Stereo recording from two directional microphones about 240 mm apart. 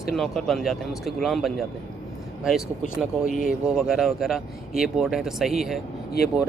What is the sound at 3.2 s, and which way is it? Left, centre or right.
Speech, left.